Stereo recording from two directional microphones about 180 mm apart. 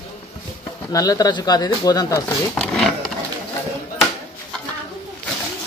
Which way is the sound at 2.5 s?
5° left (ahead or behind).